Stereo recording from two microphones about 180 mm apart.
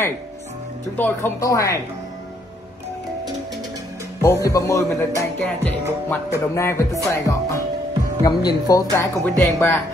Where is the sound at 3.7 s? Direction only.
15° right (ahead or behind).